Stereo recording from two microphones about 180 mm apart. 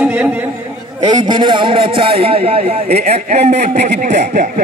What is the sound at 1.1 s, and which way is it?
A man's voice, 25° right (ahead or behind).